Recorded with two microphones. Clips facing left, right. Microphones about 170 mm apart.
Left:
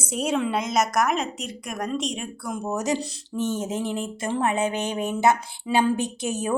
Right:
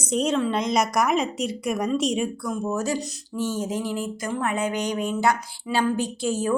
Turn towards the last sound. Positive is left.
turn(degrees=20)  # may be behind; listen again after turning